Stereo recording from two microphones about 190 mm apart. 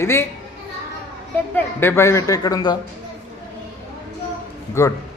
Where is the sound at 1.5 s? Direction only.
10° left (ahead or behind).